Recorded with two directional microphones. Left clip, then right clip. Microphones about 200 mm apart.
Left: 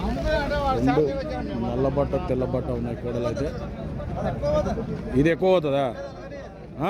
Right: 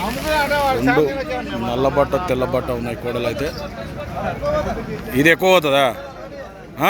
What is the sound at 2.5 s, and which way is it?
Speech, 5° right (ahead or behind).